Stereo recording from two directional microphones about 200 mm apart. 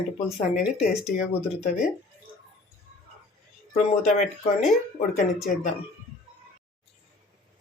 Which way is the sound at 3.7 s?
35° left (ahead or behind).